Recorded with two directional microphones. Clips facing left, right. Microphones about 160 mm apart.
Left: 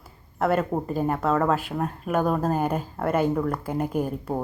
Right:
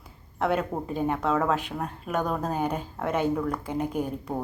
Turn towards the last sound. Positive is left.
turn(degrees=5)  # may be behind; listen again after turning